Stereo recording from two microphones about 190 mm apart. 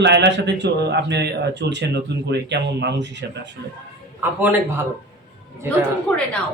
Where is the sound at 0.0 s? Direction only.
65° right (ahead or behind).